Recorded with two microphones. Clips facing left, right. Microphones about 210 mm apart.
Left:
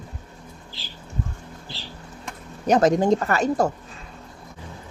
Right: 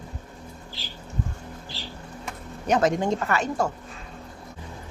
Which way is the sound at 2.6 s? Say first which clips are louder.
Left 5 dB; 40° left (ahead or behind).